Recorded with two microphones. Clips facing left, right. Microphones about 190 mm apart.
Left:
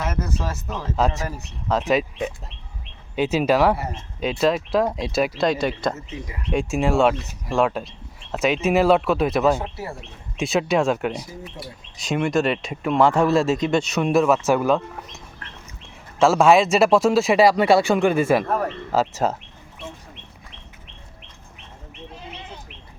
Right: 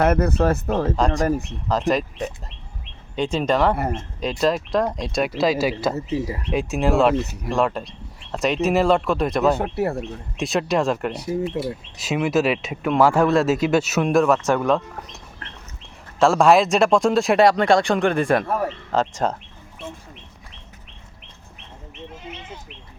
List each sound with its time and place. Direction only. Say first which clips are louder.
0.0 s speech: right 9 dB; 60° right (ahead or behind)
0.9 s speech: right 1 dB; 5° left (ahead or behind)
1.2 s speech: right 10 dB; 50° right (ahead or behind)
1.6 s speech: left 1 dB; centre (ahead or behind)
3.2 s speech: left 2 dB; 5° left (ahead or behind)
3.8 s speech: right 6 dB; 55° right (ahead or behind)
4.2 s speech: left 1 dB; centre (ahead or behind)
9.6 s speech: right 8 dB; 60° right (ahead or behind)
10.3 s speech: left 1 dB; centre (ahead or behind)